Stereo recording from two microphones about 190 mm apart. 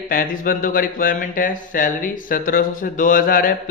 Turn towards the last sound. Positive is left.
turn(degrees=50)  # may be behind; listen again after turning